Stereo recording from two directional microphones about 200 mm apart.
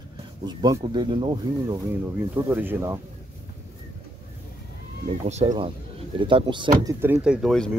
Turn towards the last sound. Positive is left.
turn(degrees=0)  # may be behind; listen again after turning